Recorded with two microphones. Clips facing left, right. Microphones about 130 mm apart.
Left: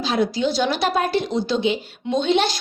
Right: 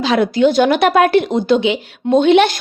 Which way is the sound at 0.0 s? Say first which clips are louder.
Right 7 dB; 65° right (ahead or behind).